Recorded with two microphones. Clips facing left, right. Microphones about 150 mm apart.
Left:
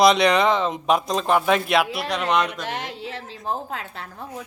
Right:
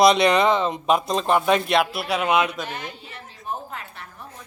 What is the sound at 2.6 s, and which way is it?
A woman's voice, 90° left.